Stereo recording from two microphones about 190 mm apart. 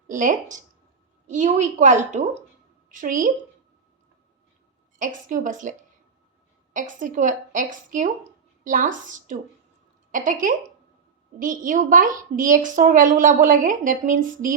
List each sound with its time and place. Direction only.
0.1 s a woman's voice: 45° right (ahead or behind)
4.9 s a woman's voice: 40° right (ahead or behind)
6.7 s a woman's voice: 40° right (ahead or behind)